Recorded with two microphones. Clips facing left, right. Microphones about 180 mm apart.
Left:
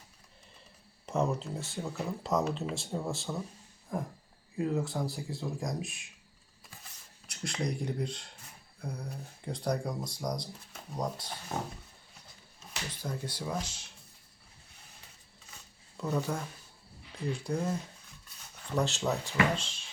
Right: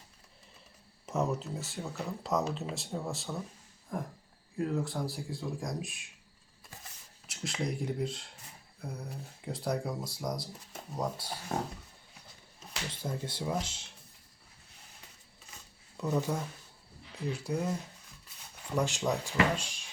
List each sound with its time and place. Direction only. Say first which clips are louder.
1.0 s speech: left 1 dB; centre (ahead or behind)
7.3 s speech: left 1 dB; 5° right (ahead or behind)
12.9 s speech: even; 25° right (ahead or behind)
16.0 s speech: right 1 dB; 10° right (ahead or behind)
18.7 s speech: even; 10° right (ahead or behind)